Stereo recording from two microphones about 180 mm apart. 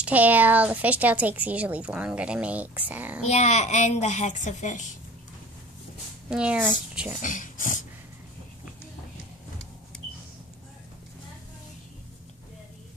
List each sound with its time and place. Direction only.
0.0 s speech: 10° right (ahead or behind)
3.3 s a woman's voice: 40° left (ahead or behind)
6.3 s speech: 5° right (ahead or behind)
7.2 s speech: 45° left (ahead or behind)